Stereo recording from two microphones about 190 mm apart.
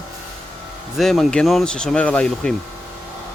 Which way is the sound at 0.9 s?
Centre (ahead or behind).